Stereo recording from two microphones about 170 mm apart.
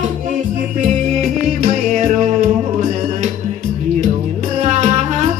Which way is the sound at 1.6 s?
50° right (ahead or behind).